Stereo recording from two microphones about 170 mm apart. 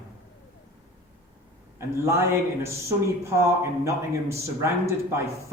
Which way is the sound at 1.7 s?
15° right (ahead or behind).